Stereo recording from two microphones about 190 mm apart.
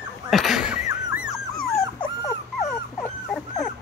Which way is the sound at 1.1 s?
5° right (ahead or behind).